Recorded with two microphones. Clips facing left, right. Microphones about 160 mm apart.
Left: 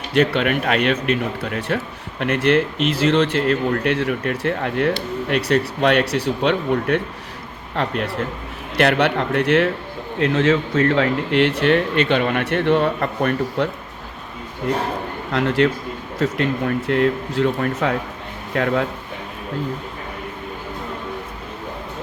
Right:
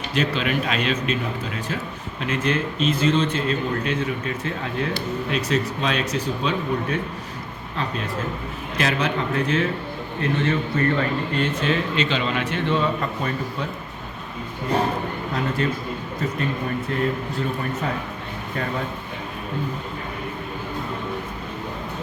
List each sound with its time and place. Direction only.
0.1 s speech: 60° left (ahead or behind)
10.2 s speech: 85° left; by 13.7 s 65° left (ahead or behind)
15.3 s speech: 80° left